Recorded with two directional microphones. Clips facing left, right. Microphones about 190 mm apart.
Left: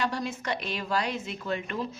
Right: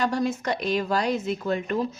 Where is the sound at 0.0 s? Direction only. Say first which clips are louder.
Right 6 dB; 45° right (ahead or behind).